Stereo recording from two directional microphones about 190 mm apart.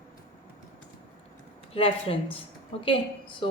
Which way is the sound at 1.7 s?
30° left (ahead or behind).